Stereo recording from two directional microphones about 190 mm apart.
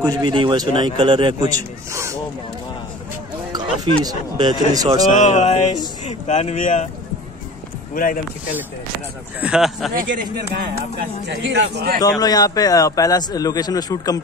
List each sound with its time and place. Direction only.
0.0 s speech: 25° right (ahead or behind)
3.5 s speech: 20° right (ahead or behind)
5.1 s speech: 40° left (ahead or behind)
7.9 s speech: 50° left (ahead or behind)
9.4 s speech: 5° right (ahead or behind)
9.9 s speech: 50° right (ahead or behind)
11.0 s speech: 65° right (ahead or behind)
12.0 s a man's voice: 20° left (ahead or behind)